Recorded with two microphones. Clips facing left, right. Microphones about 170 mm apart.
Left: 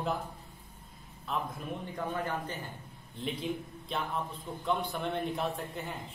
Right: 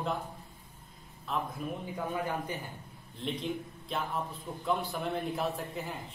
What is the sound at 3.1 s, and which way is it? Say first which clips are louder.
A man's voice: even; centre (ahead or behind).